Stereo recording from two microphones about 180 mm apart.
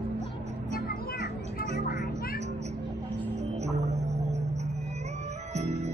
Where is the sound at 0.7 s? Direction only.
55° left (ahead or behind).